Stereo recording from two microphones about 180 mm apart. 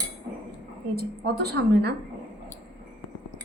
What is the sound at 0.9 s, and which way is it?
Speech, 60° right (ahead or behind).